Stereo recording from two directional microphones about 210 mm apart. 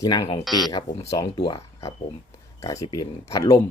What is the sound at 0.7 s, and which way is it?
Speech, 20° left (ahead or behind).